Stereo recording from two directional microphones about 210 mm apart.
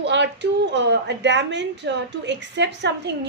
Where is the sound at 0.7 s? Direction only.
55° right (ahead or behind).